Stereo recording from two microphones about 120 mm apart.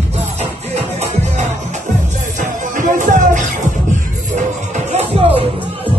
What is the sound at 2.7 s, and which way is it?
Music, 90° right.